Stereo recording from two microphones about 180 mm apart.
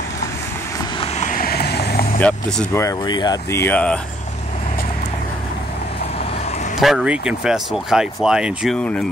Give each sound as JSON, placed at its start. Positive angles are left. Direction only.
{"t": 1.0, "sound": "vehicle", "side_deg": 35}
{"t": 1.3, "sound": "vehicle", "side_deg": 55}
{"t": 2.1, "sound": "speech", "side_deg": 5}
{"t": 6.8, "sound": "speech", "side_deg": 0}